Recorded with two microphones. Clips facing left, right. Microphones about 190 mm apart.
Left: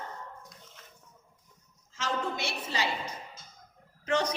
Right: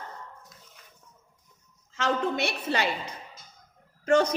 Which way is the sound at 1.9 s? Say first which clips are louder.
Right 6 dB; 65° right (ahead or behind).